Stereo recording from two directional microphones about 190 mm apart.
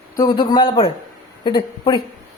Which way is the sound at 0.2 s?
25° left (ahead or behind).